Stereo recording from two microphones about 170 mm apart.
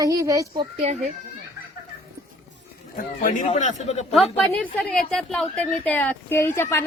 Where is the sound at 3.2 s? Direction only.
50° left (ahead or behind).